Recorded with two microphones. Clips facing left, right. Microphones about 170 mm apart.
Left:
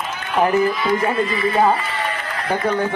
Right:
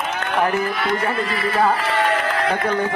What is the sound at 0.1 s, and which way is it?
Speech, 65° right (ahead or behind).